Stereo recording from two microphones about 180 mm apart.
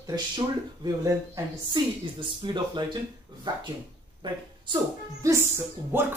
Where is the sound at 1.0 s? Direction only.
20° right (ahead or behind).